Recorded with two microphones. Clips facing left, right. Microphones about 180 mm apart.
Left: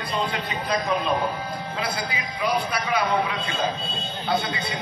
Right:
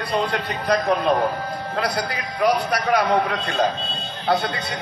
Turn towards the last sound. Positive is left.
turn(degrees=-65)  # may be behind; listen again after turning